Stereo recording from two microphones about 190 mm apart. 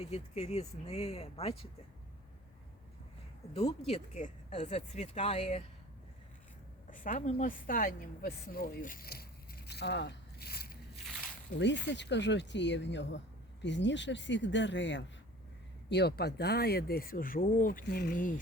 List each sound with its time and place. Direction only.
0.0 s speech: 35° left (ahead or behind)
3.5 s speech: 30° left (ahead or behind)
6.9 s a woman's voice: 40° left (ahead or behind)
11.6 s speech: 65° left (ahead or behind)
15.9 s speech: 60° left (ahead or behind)